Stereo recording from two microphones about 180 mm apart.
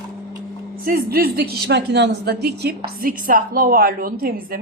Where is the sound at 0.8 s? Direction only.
55° right (ahead or behind).